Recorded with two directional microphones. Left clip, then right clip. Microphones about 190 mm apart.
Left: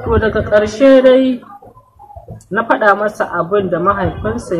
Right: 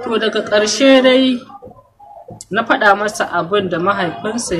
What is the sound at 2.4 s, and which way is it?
A man's voice, 10° right (ahead or behind).